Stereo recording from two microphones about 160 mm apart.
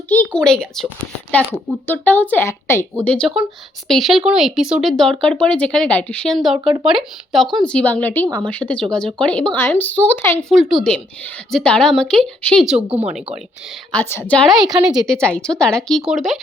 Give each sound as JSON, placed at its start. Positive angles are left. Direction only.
{"t": 0.1, "sound": "a child's voice", "side_deg": 10}
{"t": 1.9, "sound": "speech", "side_deg": 10}
{"t": 3.0, "sound": "speech", "side_deg": 5}
{"t": 10.5, "sound": "speech", "side_deg": 0}
{"t": 12.9, "sound": "speech", "side_deg": -40}
{"t": 13.9, "sound": "speech", "side_deg": 15}